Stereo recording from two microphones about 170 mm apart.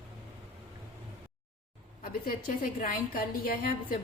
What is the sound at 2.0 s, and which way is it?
A woman's voice, 55° left (ahead or behind).